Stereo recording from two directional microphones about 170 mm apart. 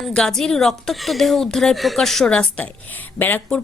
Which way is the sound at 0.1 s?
5° left (ahead or behind).